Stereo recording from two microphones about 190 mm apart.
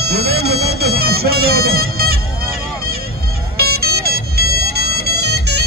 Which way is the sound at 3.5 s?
55° right (ahead or behind).